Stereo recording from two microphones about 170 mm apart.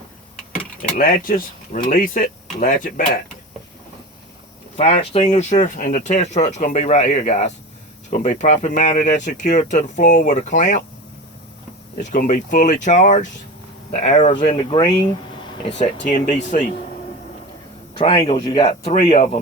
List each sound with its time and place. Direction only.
0.8 s speech: 55° left (ahead or behind)
4.8 s speech: 35° left (ahead or behind)
11.9 s speech: 50° left (ahead or behind); by 14.8 s 35° left (ahead or behind)
16.0 s speech: 50° left (ahead or behind)
17.9 s a man's voice: 30° left (ahead or behind)
18.9 s speech: 40° left (ahead or behind)